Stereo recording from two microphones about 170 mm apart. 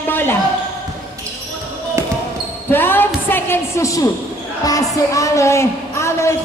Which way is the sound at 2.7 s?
10° left (ahead or behind).